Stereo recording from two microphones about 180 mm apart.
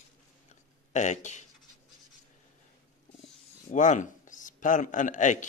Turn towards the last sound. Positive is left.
turn(degrees=45)  # may be behind; listen again after turning